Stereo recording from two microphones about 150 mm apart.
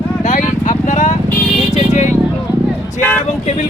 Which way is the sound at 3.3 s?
50° left (ahead or behind).